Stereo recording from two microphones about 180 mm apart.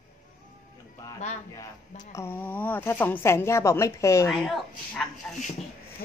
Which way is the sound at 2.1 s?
10° left (ahead or behind).